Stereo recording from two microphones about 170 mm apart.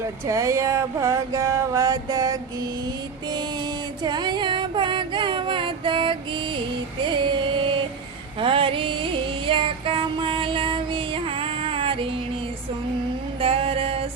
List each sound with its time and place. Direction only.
0.3 s a sound: 20° right (ahead or behind)
7.1 s female singing: 30° right (ahead or behind)
8.4 s music: 30° right (ahead or behind)
13.4 s mantra: 35° right (ahead or behind)